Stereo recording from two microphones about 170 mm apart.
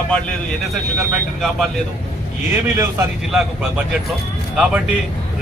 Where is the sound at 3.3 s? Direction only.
5° right (ahead or behind).